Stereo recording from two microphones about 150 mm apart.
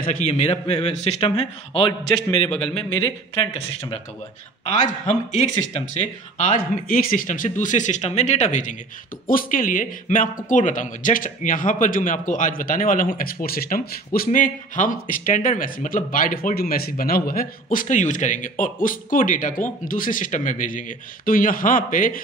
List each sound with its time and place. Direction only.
0.0 s a man's voice: 55° left (ahead or behind); by 2.5 s 35° left (ahead or behind)
2.5 s speech: 5° left (ahead or behind)
6.3 s speech: 55° left (ahead or behind)